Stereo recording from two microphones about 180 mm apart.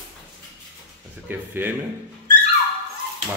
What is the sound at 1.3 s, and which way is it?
Speech, 10° right (ahead or behind).